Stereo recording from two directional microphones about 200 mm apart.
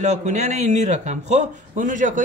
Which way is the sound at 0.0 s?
35° right (ahead or behind).